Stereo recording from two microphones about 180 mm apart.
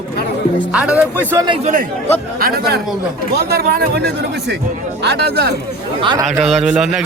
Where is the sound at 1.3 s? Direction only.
20° right (ahead or behind).